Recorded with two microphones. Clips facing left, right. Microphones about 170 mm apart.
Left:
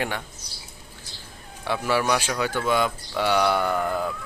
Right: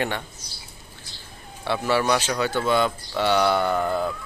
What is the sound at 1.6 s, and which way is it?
Speech, 10° left (ahead or behind).